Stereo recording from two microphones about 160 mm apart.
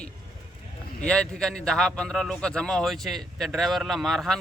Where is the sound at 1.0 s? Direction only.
5° left (ahead or behind).